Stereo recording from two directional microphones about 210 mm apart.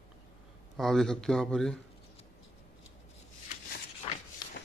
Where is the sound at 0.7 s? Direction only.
Centre (ahead or behind).